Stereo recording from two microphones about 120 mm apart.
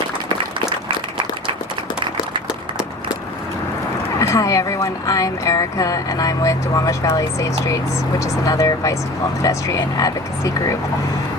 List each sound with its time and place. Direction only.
4.2 s speech: 25° left (ahead or behind)